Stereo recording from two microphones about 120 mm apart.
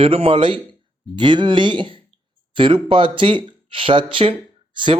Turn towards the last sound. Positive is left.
turn(degrees=-45)  # may be behind; listen again after turning